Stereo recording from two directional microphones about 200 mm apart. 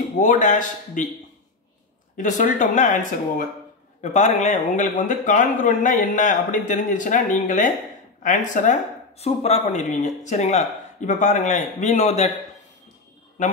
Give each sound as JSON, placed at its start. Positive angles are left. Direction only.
{"t": 0.2, "sound": "speech", "side_deg": 40}
{"t": 2.1, "sound": "speech", "side_deg": 40}